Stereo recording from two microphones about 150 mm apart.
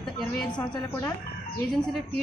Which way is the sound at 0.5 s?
25° left (ahead or behind).